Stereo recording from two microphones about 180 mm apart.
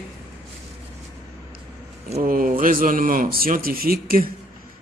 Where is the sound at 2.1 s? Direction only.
50° right (ahead or behind).